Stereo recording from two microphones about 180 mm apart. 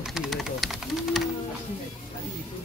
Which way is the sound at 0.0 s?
5° right (ahead or behind).